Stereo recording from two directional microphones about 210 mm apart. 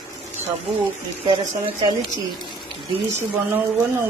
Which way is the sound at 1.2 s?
25° right (ahead or behind).